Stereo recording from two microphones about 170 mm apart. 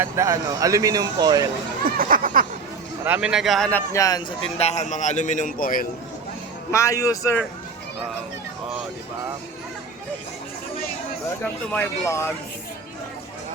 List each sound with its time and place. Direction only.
0.0 s speech: 20° right (ahead or behind)
1.8 s speech: 55° right (ahead or behind)
3.0 s a man's voice: 5° right (ahead or behind); by 4.0 s 10° left (ahead or behind)
4.5 s a man's voice: 40° left (ahead or behind); by 5.9 s 55° left (ahead or behind)
6.7 s a man's voice: 15° left (ahead or behind)
11.7 s a man's voice: 15° left (ahead or behind)